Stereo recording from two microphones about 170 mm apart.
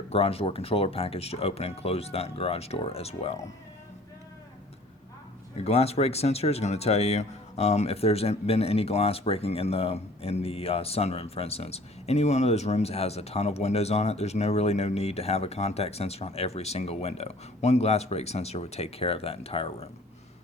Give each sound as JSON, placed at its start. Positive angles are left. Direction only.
{"t": 0.1, "sound": "speech", "side_deg": 35}
{"t": 5.5, "sound": "speech", "side_deg": 35}